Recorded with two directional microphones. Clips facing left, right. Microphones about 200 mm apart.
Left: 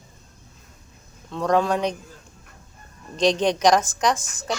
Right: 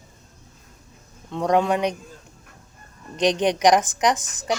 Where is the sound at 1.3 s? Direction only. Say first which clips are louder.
Right 1 dB; 15° right (ahead or behind).